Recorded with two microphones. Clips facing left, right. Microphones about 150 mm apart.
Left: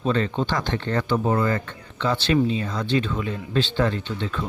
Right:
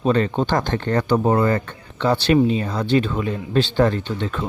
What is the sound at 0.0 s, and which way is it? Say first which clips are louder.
Speech: right 4 dB; 45° right (ahead or behind).